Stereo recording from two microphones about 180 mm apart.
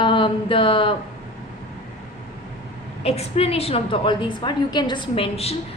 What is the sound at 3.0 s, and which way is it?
A woman's voice, 35° left (ahead or behind).